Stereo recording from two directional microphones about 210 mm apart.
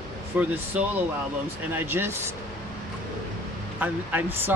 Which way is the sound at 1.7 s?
10° right (ahead or behind).